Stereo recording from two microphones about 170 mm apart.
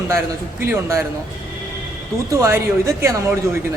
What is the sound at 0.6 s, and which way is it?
Speech, 15° right (ahead or behind).